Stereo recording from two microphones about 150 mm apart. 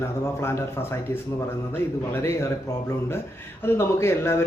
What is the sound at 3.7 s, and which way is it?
Speech, 15° left (ahead or behind).